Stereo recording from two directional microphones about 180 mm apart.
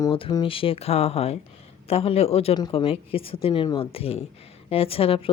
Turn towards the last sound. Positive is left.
turn(degrees=30)  # may be behind; listen again after turning